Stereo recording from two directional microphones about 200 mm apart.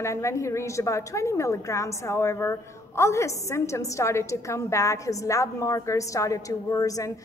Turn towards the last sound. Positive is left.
turn(degrees=15)  # may be behind; listen again after turning